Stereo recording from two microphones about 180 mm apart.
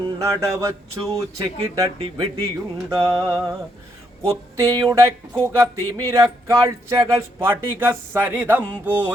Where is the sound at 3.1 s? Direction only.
15° right (ahead or behind).